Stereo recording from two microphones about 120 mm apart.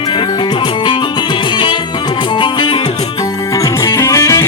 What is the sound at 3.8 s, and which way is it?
Music, 25° left (ahead or behind).